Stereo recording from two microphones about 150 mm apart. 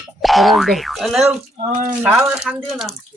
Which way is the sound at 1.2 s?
50° right (ahead or behind).